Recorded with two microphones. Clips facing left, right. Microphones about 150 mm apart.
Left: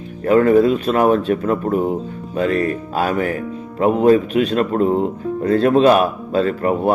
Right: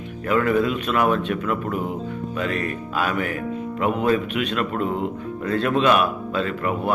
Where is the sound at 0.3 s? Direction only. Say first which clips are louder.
Left 8 dB; 35° left (ahead or behind).